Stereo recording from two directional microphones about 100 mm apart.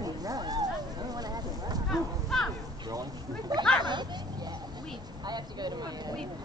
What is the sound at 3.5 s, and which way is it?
Speech, 40° right (ahead or behind).